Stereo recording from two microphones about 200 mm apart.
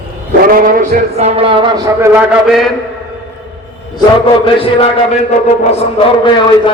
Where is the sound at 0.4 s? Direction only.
45° right (ahead or behind); by 2.2 s 15° right (ahead or behind).